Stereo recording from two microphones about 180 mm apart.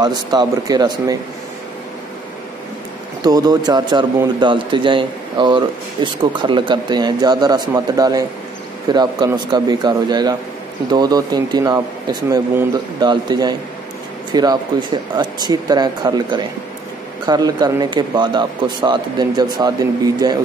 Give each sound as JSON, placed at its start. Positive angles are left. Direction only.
{"t": 0.0, "sound": "a man's voice", "side_deg": -25}
{"t": 3.3, "sound": "a man's voice", "side_deg": -20}